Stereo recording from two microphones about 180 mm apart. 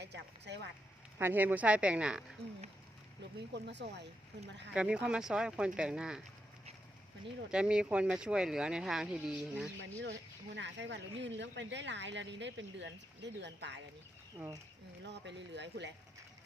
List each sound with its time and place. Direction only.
0.0 s a sound: 70° right (ahead or behind)
1.2 s a woman's voice: 10° right (ahead or behind)
3.5 s speech: 75° right (ahead or behind)
4.7 s speech: 5° right (ahead or behind)
7.5 s speech: 5° right (ahead or behind)
10.0 s speech: 75° right (ahead or behind)
14.3 s speech: 20° right (ahead or behind)
15.0 s speech: 75° right (ahead or behind)